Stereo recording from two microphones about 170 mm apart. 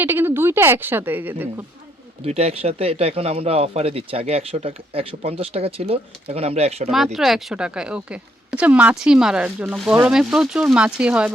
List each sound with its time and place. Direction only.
0.0 s speech: 15° right (ahead or behind)
2.2 s speech: 40° right (ahead or behind)
6.9 s speech: centre (ahead or behind)